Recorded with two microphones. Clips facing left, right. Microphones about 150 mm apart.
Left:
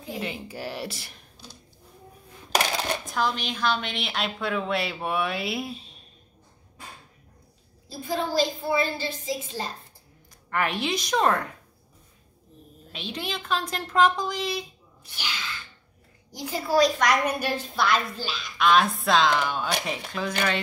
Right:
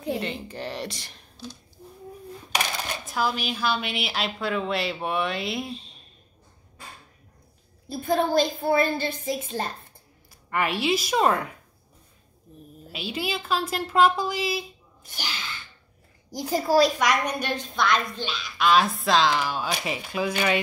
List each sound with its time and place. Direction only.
0.2 s a woman's voice: 5° left (ahead or behind)
3.1 s a woman's voice: 5° right (ahead or behind)
7.9 s a woman's voice: 60° right (ahead or behind)
10.5 s a woman's voice: 5° right (ahead or behind)
12.9 s a woman's voice: 5° right (ahead or behind)
15.0 s a child's voice: 45° right (ahead or behind)
17.0 s a woman's voice: 5° left (ahead or behind)